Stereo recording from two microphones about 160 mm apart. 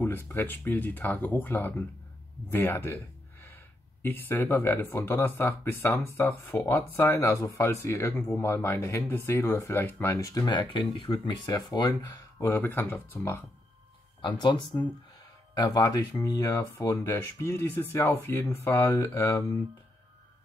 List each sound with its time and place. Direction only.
0.3 s speech: 15° left (ahead or behind)
12.4 s speech: 15° left (ahead or behind)
14.2 s speech: 30° left (ahead or behind)